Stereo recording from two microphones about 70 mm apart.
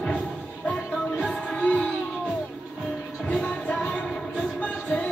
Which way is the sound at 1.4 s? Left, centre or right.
Centre.